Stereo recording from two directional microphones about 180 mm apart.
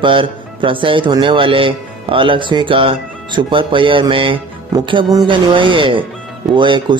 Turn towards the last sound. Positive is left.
turn(degrees=-25)  # may be behind; listen again after turning